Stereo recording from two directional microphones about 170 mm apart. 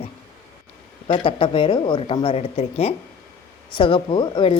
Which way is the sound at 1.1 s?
30° left (ahead or behind).